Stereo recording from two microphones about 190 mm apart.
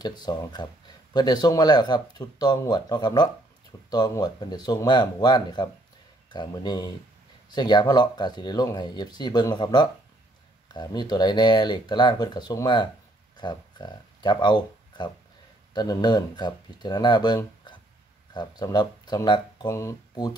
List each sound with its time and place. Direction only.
0.0 s speech: 20° left (ahead or behind)